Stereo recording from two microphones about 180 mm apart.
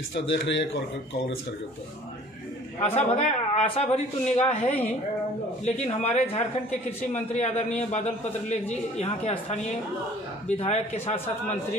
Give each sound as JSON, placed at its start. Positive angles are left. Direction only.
{"t": 0.1, "sound": "a man's voice", "side_deg": 80}
{"t": 3.0, "sound": "a man's voice", "side_deg": 35}
{"t": 10.6, "sound": "a man's voice", "side_deg": 35}